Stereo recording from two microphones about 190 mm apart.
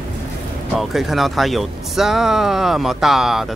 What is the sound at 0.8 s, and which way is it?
Speech, centre (ahead or behind).